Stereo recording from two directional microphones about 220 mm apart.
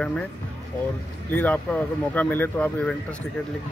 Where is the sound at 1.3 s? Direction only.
5° left (ahead or behind).